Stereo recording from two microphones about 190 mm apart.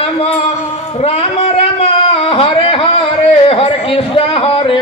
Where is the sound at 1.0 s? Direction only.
30° left (ahead or behind).